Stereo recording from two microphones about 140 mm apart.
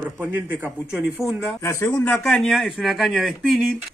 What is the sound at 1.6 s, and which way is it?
Speech, 20° left (ahead or behind).